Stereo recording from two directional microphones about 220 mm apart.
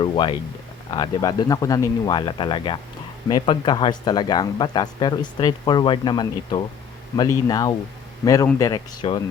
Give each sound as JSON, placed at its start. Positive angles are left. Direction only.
{"t": 0.0, "sound": "speech", "side_deg": 20}